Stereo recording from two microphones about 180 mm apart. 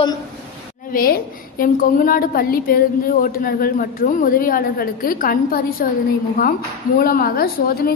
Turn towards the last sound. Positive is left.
turn(degrees=55)  # may be behind; listen again after turning